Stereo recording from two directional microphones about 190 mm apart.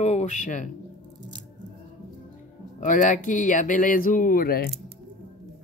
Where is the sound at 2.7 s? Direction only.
45° left (ahead or behind).